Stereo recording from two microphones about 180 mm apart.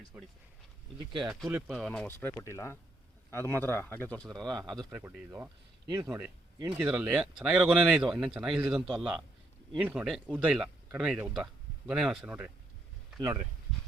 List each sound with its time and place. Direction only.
0.1 s a man's voice: 10° right (ahead or behind); by 4.3 s 10° left (ahead or behind)
4.3 s speech: 20° right (ahead or behind)
4.9 s speech: 10° right (ahead or behind)
13.1 s speech: 20° right (ahead or behind)